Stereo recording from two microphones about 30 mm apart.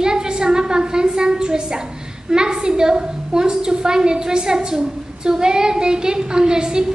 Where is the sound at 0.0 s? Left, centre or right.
Right.